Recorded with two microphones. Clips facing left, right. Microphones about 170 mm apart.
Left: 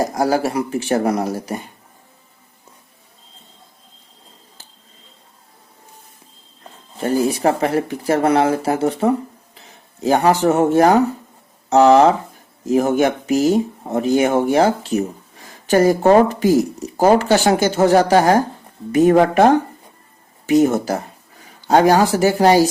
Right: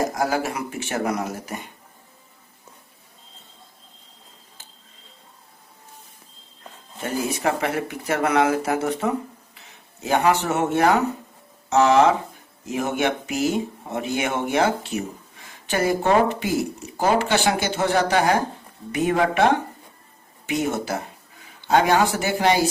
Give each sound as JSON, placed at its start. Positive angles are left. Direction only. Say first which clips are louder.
{"t": 0.1, "sound": "speech", "louder": "left 6 dB", "side_deg": 35}
{"t": 7.0, "sound": "speech", "louder": "left 7 dB", "side_deg": 35}